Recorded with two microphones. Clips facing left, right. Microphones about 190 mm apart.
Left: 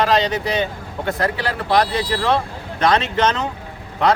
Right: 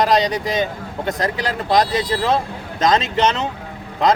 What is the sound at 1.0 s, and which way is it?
Speech, 20° right (ahead or behind).